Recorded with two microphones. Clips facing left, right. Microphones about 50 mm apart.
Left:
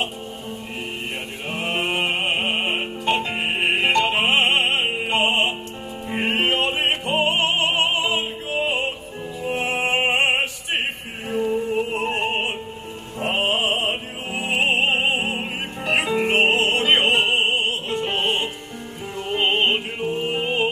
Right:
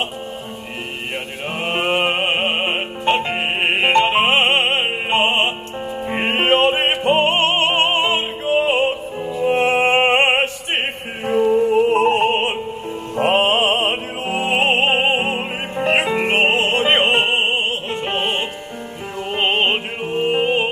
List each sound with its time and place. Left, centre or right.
1.6 s music: right
9.4 s opera: right
13.2 s music: right